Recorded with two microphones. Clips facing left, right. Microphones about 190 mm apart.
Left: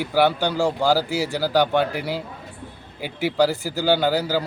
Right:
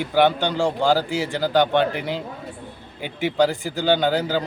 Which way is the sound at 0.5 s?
15° right (ahead or behind).